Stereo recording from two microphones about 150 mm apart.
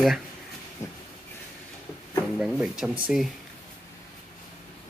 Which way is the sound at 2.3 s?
5° right (ahead or behind).